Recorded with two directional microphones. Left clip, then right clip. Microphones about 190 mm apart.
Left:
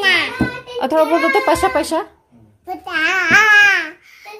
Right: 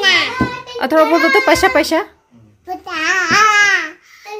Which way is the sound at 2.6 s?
10° left (ahead or behind).